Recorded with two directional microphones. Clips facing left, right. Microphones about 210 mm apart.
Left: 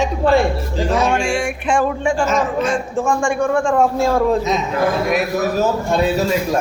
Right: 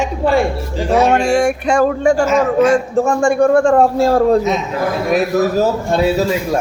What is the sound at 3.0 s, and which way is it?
A man's voice, 40° right (ahead or behind).